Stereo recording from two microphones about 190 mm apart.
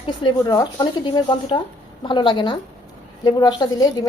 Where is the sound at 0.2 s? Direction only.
20° left (ahead or behind).